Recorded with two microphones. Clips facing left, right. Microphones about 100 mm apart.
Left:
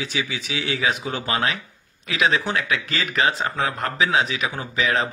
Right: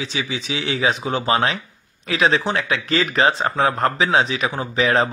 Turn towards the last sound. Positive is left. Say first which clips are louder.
# right 4 dB
turn(degrees=-35)  # may be behind; listen again after turning